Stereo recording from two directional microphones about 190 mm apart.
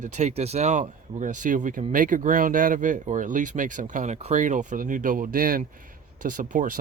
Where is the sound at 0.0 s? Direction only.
40° right (ahead or behind).